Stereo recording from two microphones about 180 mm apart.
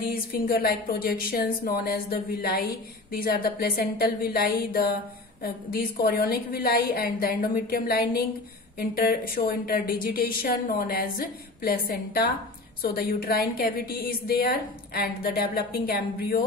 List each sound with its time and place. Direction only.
0.0 s speech: 55° left (ahead or behind)